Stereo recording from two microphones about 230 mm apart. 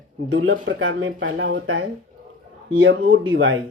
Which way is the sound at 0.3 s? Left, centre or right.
Right.